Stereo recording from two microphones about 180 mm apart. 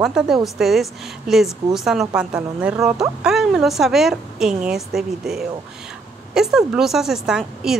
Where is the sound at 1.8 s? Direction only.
5° right (ahead or behind).